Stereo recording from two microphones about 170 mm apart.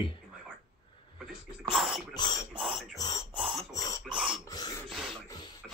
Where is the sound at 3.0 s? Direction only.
20° left (ahead or behind).